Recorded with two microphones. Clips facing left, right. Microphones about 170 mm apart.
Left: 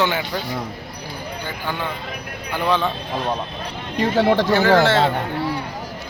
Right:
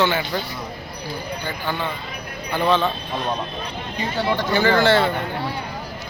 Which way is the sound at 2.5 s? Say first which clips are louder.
Right 1 dB; 10° left (ahead or behind).